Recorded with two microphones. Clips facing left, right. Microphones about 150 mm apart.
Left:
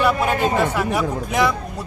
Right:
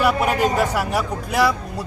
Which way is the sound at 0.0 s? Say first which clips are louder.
Even; 10° right (ahead or behind).